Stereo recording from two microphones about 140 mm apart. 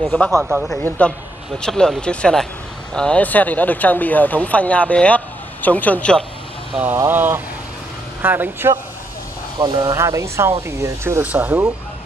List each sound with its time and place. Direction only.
0.4 s speech: 5° right (ahead or behind)
0.8 s speech: 10° left (ahead or behind)
6.7 s speech: 10° right (ahead or behind)
9.6 s speech: 35° right (ahead or behind)
9.9 s speech: 20° right (ahead or behind)